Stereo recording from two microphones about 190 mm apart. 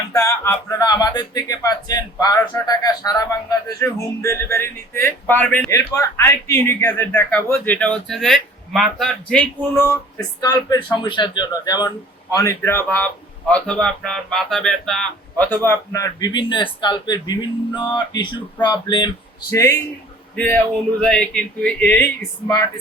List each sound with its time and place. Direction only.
0.1 s speech: 15° left (ahead or behind)
15.6 s speech: 15° left (ahead or behind)